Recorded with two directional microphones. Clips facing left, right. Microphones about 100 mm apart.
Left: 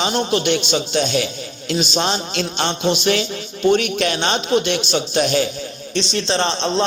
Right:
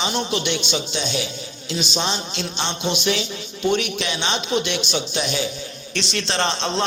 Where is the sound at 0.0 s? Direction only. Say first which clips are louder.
Left 5 dB; 50° left (ahead or behind).